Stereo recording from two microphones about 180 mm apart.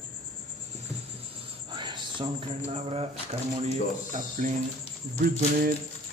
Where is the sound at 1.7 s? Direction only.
25° right (ahead or behind).